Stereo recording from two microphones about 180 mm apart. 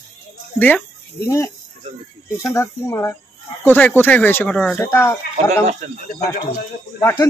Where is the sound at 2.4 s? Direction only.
15° left (ahead or behind).